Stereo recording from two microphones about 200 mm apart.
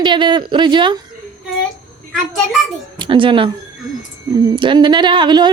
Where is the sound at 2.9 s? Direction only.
25° right (ahead or behind).